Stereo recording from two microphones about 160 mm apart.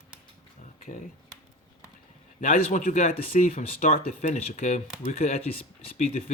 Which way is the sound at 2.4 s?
55° left (ahead or behind).